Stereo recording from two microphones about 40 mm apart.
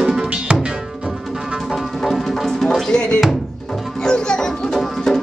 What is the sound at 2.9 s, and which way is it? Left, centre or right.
Music, left.